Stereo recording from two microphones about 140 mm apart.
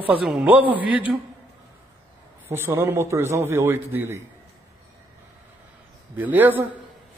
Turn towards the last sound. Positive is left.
turn(degrees=-15)  # may be behind; listen again after turning